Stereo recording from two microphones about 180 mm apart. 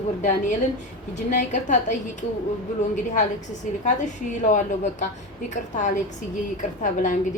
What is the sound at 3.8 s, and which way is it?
A woman's voice, 45° left (ahead or behind).